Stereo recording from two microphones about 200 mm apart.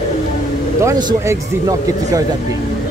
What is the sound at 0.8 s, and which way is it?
Speech, 20° right (ahead or behind).